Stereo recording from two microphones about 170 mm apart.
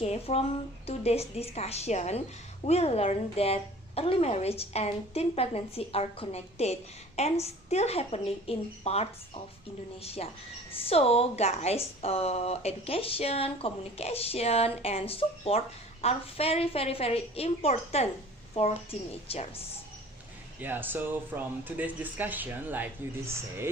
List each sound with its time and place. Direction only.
0.0 s a woman's voice: 35° left (ahead or behind)
10.7 s a woman's voice: 35° left (ahead or behind)
20.6 s speech: 10° right (ahead or behind)